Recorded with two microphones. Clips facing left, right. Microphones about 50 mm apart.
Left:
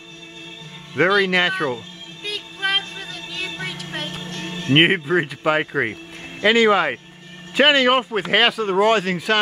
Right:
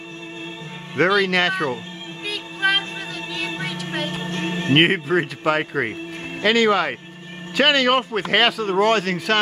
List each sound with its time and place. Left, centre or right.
0.9 s speech: centre
2.2 s music: centre
4.2 s music: right
4.7 s speech: centre